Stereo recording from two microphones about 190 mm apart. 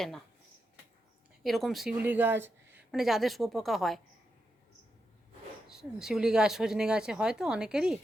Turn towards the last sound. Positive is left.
turn(degrees=-5)  # may be behind; listen again after turning